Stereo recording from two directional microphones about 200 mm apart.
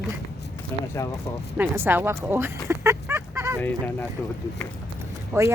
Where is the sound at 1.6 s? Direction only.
10° right (ahead or behind).